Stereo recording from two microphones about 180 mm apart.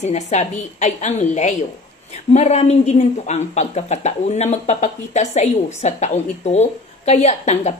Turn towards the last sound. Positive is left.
turn(degrees=40)  # may be behind; listen again after turning